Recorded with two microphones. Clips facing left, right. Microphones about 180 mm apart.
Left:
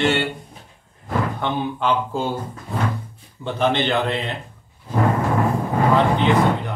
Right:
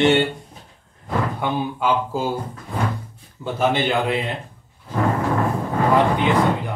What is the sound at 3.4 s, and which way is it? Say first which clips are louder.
Speech: even; 10° right (ahead or behind).